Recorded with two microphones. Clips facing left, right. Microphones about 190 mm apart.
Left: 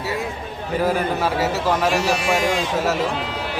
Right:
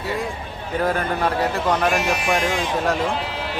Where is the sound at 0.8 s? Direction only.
5° left (ahead or behind).